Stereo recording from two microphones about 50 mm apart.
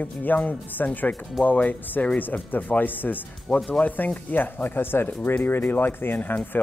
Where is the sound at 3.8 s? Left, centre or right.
Left.